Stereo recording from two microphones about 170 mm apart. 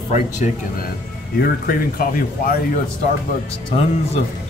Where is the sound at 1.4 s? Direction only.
60° left (ahead or behind).